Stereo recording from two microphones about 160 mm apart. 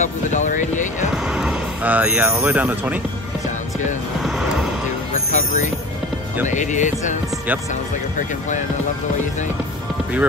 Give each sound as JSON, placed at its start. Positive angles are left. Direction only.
{"t": 0.0, "sound": "speech", "side_deg": 50}
{"t": 1.1, "sound": "speech", "side_deg": -5}
{"t": 4.2, "sound": "music", "side_deg": 0}
{"t": 5.3, "sound": "music", "side_deg": 50}